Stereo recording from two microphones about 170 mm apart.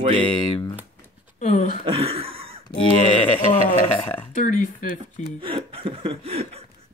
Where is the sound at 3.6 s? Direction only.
10° left (ahead or behind).